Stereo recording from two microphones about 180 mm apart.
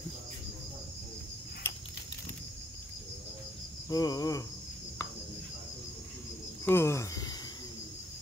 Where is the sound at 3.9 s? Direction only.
20° left (ahead or behind).